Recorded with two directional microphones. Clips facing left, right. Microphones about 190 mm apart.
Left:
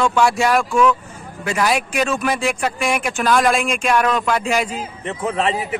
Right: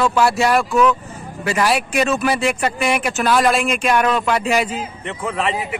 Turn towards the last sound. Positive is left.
turn(degrees=25)  # may be behind; listen again after turning